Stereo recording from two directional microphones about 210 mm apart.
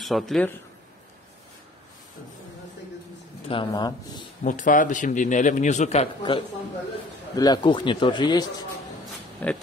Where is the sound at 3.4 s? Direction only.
25° left (ahead or behind).